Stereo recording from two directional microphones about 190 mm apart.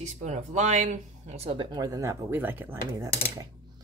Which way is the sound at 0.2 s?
40° right (ahead or behind).